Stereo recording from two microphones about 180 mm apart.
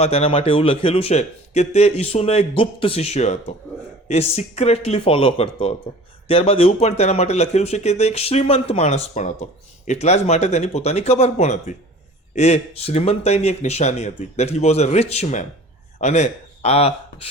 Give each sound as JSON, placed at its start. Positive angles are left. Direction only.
{"t": 0.0, "sound": "a man's voice", "side_deg": 35}